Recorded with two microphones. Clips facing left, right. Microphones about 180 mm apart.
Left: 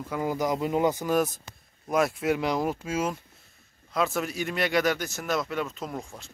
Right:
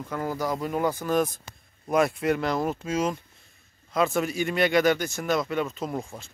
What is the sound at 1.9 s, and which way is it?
Speech, centre (ahead or behind).